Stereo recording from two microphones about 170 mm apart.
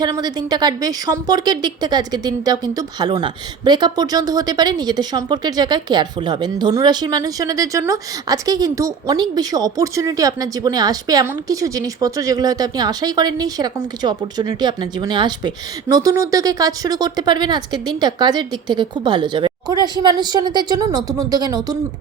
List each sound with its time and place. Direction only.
0.0 s a woman's voice: 25° right (ahead or behind)